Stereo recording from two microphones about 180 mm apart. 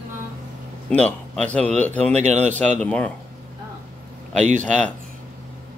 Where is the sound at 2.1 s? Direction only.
40° right (ahead or behind).